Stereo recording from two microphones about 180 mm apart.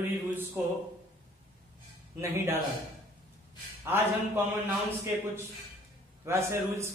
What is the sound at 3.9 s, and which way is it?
Speech, 10° right (ahead or behind).